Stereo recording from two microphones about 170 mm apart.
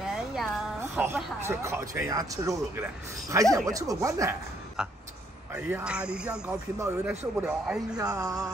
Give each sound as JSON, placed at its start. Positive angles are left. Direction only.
{"t": 0.0, "sound": "a sound", "side_deg": 0}
{"t": 0.9, "sound": "speech", "side_deg": -15}
{"t": 4.8, "sound": "a man's voice", "side_deg": -5}
{"t": 8.0, "sound": "speech", "side_deg": -20}